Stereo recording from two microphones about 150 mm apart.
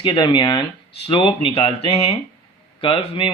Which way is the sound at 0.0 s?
30° left (ahead or behind).